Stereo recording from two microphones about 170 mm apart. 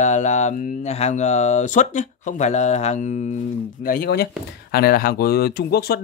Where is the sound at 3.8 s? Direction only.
60° left (ahead or behind).